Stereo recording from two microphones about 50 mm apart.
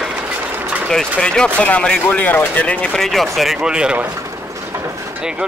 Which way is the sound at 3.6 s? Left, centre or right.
Centre.